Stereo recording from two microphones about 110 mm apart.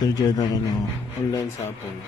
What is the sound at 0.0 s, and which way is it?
Speech, 35° left (ahead or behind).